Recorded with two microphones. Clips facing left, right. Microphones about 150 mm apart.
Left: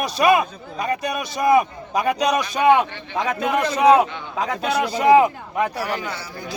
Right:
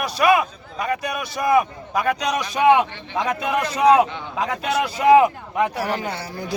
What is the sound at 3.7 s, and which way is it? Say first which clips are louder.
A man's voice: even; 10° right (ahead or behind).